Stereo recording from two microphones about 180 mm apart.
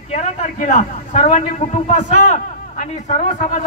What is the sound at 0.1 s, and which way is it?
A man's voice, 40° left (ahead or behind).